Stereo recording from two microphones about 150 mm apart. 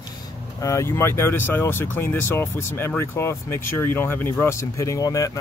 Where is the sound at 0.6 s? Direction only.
20° left (ahead or behind).